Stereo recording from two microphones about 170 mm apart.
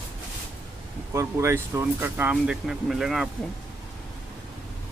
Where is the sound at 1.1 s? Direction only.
15° right (ahead or behind).